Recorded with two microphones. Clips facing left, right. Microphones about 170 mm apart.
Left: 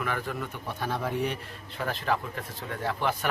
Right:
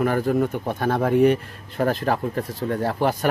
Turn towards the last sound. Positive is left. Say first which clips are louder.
# right 8 dB
turn(degrees=-40)  # may be behind; listen again after turning